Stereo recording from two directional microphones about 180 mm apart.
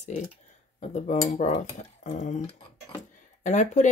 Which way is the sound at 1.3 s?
40° left (ahead or behind).